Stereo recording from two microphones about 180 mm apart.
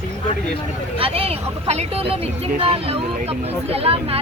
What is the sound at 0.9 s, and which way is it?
Speech, 30° right (ahead or behind).